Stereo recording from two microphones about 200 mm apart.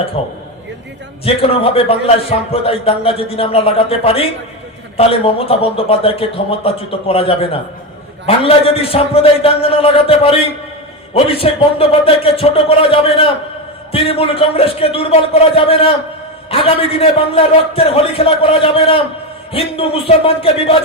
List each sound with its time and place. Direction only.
0.2 s a man's voice: 30° left (ahead or behind)